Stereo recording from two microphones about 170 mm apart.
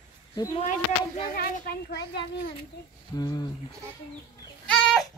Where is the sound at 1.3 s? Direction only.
60° left (ahead or behind).